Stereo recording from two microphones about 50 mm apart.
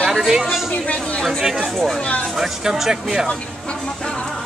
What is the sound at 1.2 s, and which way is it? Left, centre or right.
Speech, centre.